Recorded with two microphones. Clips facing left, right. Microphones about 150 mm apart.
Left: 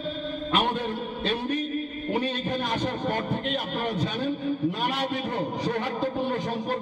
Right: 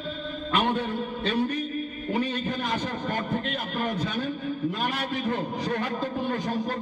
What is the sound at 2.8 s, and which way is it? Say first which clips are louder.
Speech: left 2 dB; 25° left (ahead or behind).